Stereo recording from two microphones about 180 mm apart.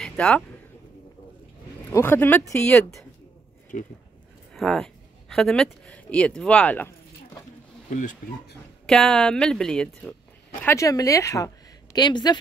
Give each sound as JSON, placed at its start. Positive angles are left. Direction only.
{"t": 0.0, "sound": "a sound", "side_deg": 5}
{"t": 1.9, "sound": "speech", "side_deg": 15}
{"t": 3.7, "sound": "speech", "side_deg": 40}
{"t": 4.6, "sound": "speech", "side_deg": 0}
{"t": 8.8, "sound": "speech", "side_deg": 5}
{"t": 10.6, "sound": "a woman's voice", "side_deg": 15}